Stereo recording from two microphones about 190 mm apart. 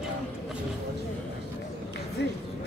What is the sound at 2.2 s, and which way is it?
Run, 65° left (ahead or behind).